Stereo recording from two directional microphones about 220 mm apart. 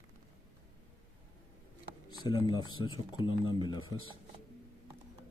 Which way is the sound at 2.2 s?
20° left (ahead or behind).